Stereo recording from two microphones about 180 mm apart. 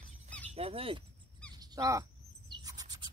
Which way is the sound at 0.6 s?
30° right (ahead or behind).